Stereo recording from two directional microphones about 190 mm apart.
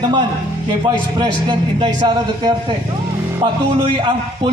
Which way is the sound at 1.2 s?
25° right (ahead or behind).